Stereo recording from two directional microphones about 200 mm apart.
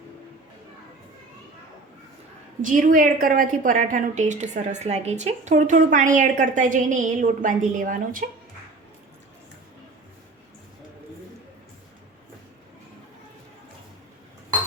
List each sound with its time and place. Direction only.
2.6 s a woman's voice: 40° right (ahead or behind)